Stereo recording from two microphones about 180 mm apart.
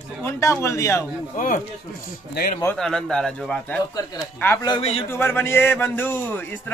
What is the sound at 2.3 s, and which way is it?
Speech, 55° left (ahead or behind).